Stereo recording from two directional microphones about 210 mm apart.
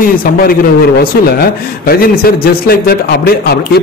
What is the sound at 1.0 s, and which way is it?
A man's voice, 45° left (ahead or behind).